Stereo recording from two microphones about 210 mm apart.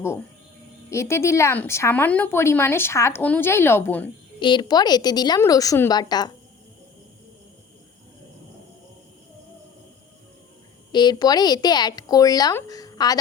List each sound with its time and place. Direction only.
0.9 s speech: 15° left (ahead or behind)
4.4 s speech: 20° left (ahead or behind)
10.9 s speech: 20° left (ahead or behind)